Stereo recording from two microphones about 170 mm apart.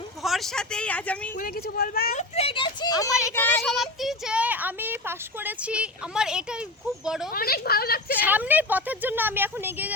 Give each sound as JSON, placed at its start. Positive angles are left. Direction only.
{"t": 0.2, "sound": "speech", "side_deg": 0}
{"t": 1.4, "sound": "speech", "side_deg": 60}
{"t": 2.1, "sound": "speech", "side_deg": 35}
{"t": 3.1, "sound": "speech", "side_deg": -5}
{"t": 3.3, "sound": "child singing", "side_deg": 10}
{"t": 3.6, "sound": "speech", "side_deg": 0}
{"t": 7.3, "sound": "speech", "side_deg": 65}
{"t": 8.2, "sound": "speech", "side_deg": -10}